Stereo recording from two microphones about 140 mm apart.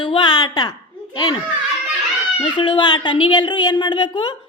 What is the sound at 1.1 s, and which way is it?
Speech, 30° left (ahead or behind).